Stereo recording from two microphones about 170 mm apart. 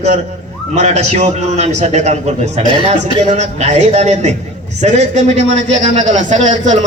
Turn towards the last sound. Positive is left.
turn(degrees=-45)  # may be behind; listen again after turning